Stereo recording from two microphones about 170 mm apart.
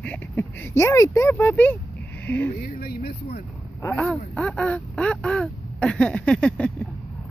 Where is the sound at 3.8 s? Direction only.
5° left (ahead or behind).